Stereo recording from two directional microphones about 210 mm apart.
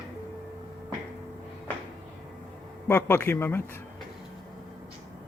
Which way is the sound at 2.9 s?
10° left (ahead or behind).